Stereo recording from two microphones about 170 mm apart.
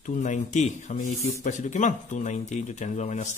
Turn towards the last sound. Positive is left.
turn(degrees=45)  # may be behind; listen again after turning